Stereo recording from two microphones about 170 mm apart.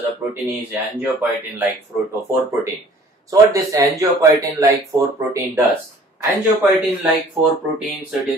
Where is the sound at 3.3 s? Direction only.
20° right (ahead or behind).